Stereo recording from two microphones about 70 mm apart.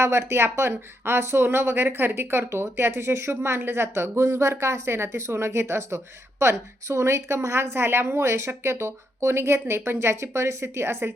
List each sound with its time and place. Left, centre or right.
0.0 s a woman's voice: right